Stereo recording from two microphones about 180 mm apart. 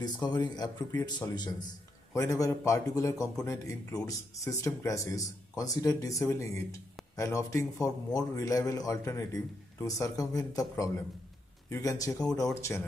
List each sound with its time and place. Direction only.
0.0 s speech: 25° left (ahead or behind)